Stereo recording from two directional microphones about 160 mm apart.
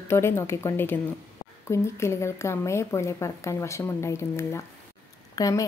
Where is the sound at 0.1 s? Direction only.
15° left (ahead or behind).